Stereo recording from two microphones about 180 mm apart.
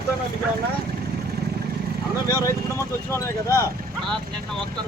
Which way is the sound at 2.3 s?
20° left (ahead or behind).